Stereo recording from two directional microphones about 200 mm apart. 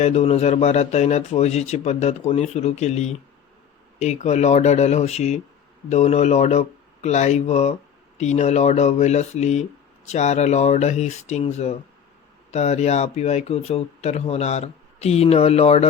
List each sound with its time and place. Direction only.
0.0 s speech: 30° left (ahead or behind)